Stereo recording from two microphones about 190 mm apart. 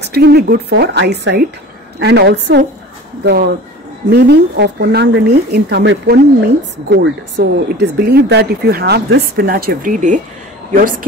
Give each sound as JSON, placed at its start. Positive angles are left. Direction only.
{"t": 0.0, "sound": "speech", "side_deg": -60}
{"t": 4.1, "sound": "speech", "side_deg": -60}